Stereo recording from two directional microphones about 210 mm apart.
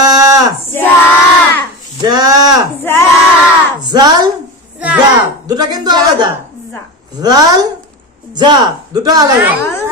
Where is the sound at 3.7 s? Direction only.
20° right (ahead or behind).